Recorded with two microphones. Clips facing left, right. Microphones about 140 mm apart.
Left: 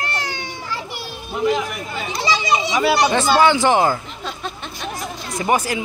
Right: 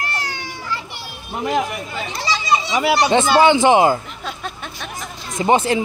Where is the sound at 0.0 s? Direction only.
25° left (ahead or behind).